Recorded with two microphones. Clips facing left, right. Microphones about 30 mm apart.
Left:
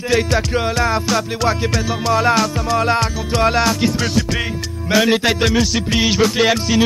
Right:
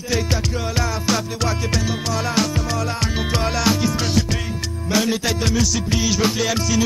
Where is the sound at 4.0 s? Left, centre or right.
Centre.